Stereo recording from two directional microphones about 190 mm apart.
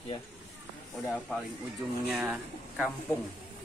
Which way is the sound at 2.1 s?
5° right (ahead or behind).